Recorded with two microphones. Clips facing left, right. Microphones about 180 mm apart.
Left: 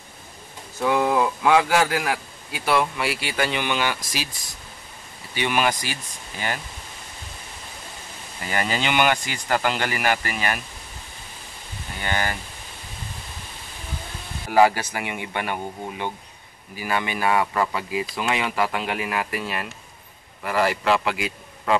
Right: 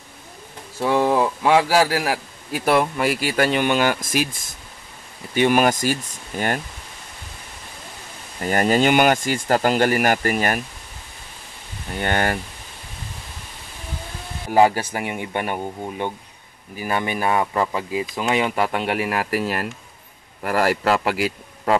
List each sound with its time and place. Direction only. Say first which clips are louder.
0.7 s a man's voice: right 2 dB; 30° right (ahead or behind); by 6.6 s 50° right (ahead or behind)
8.4 s a man's voice: right 8 dB; 45° right (ahead or behind)
12.0 s speech: right 5 dB; 55° right (ahead or behind)
14.7 s a man's voice: right 3 dB; 40° right (ahead or behind)
17.3 s a man's voice: even; 25° right (ahead or behind)